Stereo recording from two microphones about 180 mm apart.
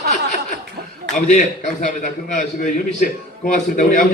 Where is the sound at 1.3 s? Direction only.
40° left (ahead or behind).